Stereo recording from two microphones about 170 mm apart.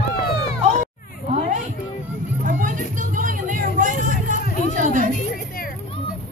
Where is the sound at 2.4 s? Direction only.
50° right (ahead or behind).